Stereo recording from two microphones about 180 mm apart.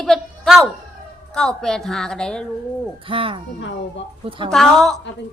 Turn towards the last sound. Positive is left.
turn(degrees=0)  # may be behind; listen again after turning